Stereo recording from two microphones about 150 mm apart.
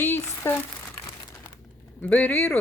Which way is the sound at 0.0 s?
15° left (ahead or behind).